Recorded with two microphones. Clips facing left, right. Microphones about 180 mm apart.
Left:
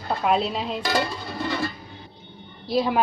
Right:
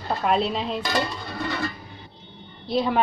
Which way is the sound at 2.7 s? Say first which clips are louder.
Left 1 dB; 5° left (ahead or behind).